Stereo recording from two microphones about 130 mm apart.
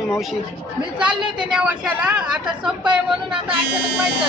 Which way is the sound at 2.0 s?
10° right (ahead or behind).